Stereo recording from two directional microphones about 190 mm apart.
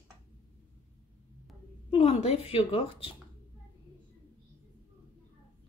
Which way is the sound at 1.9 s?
35° left (ahead or behind).